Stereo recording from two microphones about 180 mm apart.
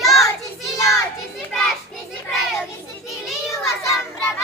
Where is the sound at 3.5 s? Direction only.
15° left (ahead or behind).